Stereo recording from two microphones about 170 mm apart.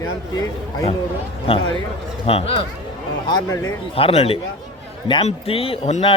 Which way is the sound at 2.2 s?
35° left (ahead or behind).